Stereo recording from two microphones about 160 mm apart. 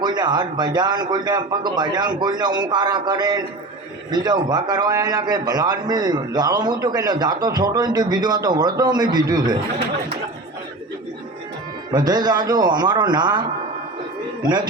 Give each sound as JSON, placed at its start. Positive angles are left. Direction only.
{"t": 0.0, "sound": "a man's voice", "side_deg": -25}
{"t": 11.9, "sound": "a man's voice", "side_deg": -25}